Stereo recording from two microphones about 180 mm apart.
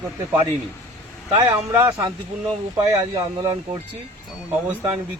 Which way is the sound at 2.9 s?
20° right (ahead or behind).